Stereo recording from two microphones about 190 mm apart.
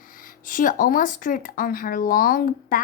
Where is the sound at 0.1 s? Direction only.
45° left (ahead or behind).